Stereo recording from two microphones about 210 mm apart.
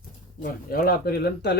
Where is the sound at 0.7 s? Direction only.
45° left (ahead or behind).